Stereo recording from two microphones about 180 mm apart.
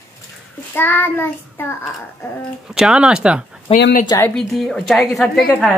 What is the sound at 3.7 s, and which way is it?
Speech, 30° left (ahead or behind).